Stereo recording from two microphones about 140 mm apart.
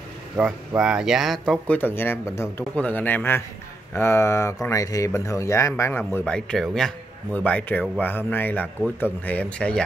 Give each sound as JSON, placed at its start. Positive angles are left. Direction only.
{"t": 0.4, "sound": "speech", "side_deg": 0}